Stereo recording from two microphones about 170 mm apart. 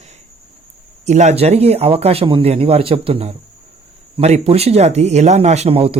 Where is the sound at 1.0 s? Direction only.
45° right (ahead or behind).